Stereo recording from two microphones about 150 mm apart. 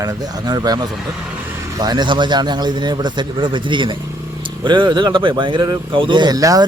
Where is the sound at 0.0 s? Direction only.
25° right (ahead or behind).